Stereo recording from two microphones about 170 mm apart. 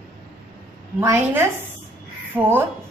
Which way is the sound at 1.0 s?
15° right (ahead or behind).